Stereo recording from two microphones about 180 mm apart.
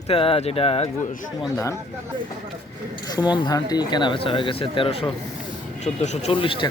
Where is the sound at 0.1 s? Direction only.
30° left (ahead or behind).